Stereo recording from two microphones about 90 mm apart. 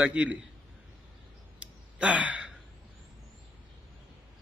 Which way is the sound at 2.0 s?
15° right (ahead or behind).